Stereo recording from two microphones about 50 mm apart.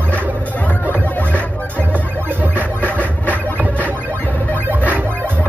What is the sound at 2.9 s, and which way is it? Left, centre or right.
Music, left.